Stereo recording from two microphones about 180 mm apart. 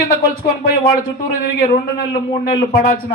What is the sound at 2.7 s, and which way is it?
Speech, 65° left (ahead or behind).